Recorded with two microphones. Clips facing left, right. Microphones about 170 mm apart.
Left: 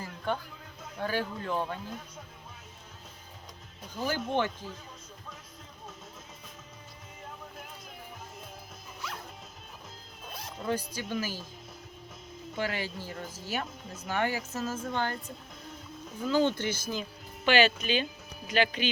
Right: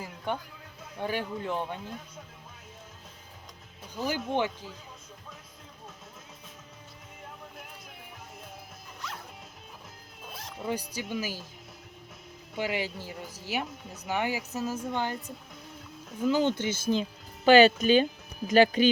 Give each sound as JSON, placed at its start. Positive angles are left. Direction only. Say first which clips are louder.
{"t": 0.3, "sound": "speech", "louder": "left 1 dB", "side_deg": -15}
{"t": 4.0, "sound": "speech", "louder": "right 1 dB", "side_deg": -15}
{"t": 10.2, "sound": "music", "louder": "right 1 dB", "side_deg": -5}
{"t": 10.7, "sound": "speech", "louder": "left 1 dB", "side_deg": -15}
{"t": 12.5, "sound": "speech", "louder": "right 2 dB", "side_deg": -15}
{"t": 16.2, "sound": "speech", "louder": "right 1 dB", "side_deg": -15}
{"t": 16.9, "sound": "speech", "louder": "right 7 dB", "side_deg": -35}